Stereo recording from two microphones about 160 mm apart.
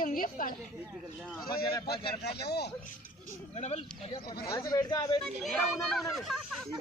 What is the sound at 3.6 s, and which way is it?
Speech, 40° left (ahead or behind).